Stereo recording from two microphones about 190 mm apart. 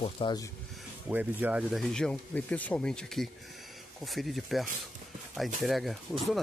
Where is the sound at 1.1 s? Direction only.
10° right (ahead or behind).